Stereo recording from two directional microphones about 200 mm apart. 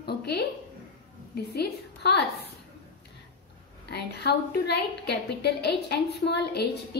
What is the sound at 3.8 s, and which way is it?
A woman's voice, 55° left (ahead or behind).